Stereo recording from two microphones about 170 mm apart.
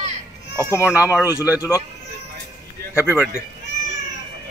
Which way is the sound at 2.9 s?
10° right (ahead or behind).